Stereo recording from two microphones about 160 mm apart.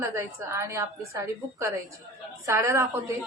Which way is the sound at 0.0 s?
15° right (ahead or behind).